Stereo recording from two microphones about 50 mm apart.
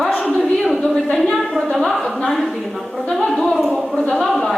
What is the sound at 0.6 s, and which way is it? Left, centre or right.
A woman's voice, centre.